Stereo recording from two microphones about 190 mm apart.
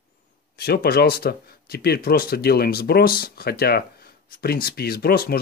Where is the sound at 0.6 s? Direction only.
55° left (ahead or behind).